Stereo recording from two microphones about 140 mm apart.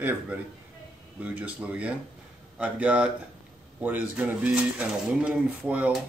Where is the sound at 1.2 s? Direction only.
10° right (ahead or behind).